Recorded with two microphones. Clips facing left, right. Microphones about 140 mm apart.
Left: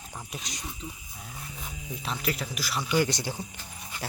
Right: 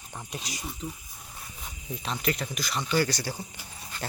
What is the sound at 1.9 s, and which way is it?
Speech, centre (ahead or behind).